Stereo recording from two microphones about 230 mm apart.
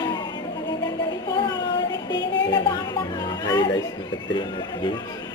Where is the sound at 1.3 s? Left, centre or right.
Centre.